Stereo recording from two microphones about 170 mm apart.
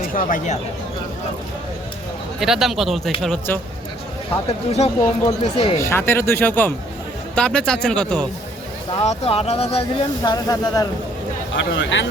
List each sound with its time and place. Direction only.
0.1 s speech: 55° left (ahead or behind)
2.4 s a man's voice: centre (ahead or behind)
4.9 s speech: 25° left (ahead or behind)
5.4 s speech: 40° left (ahead or behind)
5.8 s a man's voice: 15° left (ahead or behind)
8.9 s speech: 35° left (ahead or behind)
11.5 s speech: 90° left